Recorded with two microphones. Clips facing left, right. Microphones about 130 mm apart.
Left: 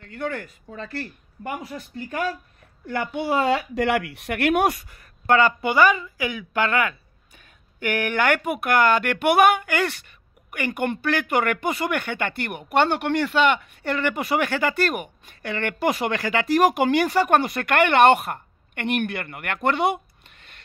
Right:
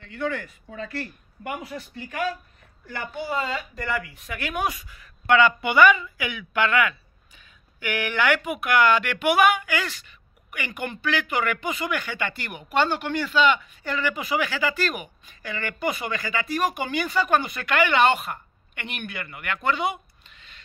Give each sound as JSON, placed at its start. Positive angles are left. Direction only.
{"t": 0.0, "sound": "speech", "side_deg": 45}
{"t": 1.4, "sound": "speech", "side_deg": 35}
{"t": 2.9, "sound": "speech", "side_deg": 65}